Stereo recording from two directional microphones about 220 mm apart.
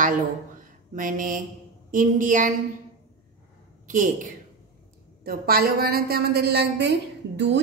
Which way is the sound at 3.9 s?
35° right (ahead or behind).